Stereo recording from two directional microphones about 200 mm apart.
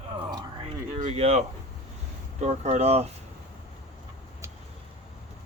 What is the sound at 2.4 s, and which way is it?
Speech, 35° right (ahead or behind).